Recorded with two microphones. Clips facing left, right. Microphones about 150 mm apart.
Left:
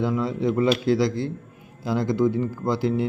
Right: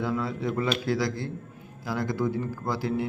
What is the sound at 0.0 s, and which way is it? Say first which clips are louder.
A man's voice: left 5 dB; 20° left (ahead or behind).